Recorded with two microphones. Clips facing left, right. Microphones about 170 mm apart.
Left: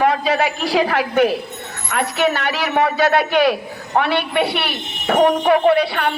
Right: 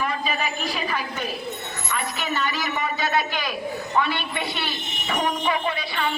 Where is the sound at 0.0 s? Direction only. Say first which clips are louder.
Left 10 dB; 85° left.